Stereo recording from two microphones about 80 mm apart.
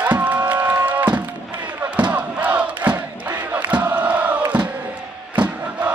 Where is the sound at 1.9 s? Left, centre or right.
Centre.